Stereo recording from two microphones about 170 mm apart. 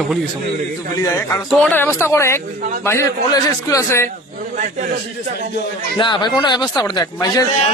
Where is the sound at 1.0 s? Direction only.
15° left (ahead or behind).